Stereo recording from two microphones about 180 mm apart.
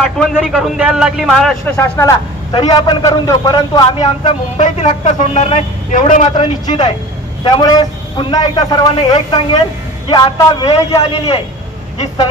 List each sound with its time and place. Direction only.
0.0 s a man's voice: centre (ahead or behind)
1.8 s a man's voice: 15° left (ahead or behind); by 6.2 s 45° left (ahead or behind)
6.3 s a man's voice: 25° left (ahead or behind)
11.0 s a man's voice: 35° left (ahead or behind)